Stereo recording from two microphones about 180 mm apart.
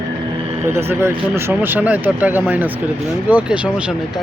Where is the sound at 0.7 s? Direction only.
15° right (ahead or behind).